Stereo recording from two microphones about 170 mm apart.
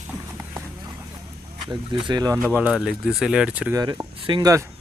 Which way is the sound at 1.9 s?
25° right (ahead or behind).